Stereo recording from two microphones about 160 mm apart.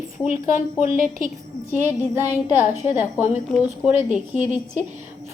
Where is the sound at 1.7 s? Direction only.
15° right (ahead or behind).